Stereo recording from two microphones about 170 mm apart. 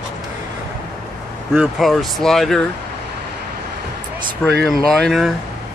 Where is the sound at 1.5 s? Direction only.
Centre (ahead or behind).